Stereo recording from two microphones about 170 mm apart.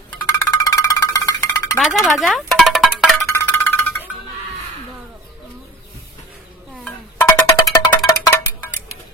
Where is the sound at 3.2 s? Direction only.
15° left (ahead or behind).